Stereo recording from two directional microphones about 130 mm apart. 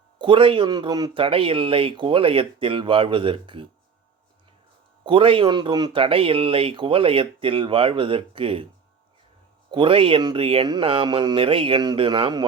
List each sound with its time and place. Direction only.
0.2 s speech: 40° right (ahead or behind)
1.2 s speech: 45° right (ahead or behind)
5.0 s speech: 40° right (ahead or behind)
9.7 s speech: 45° right (ahead or behind)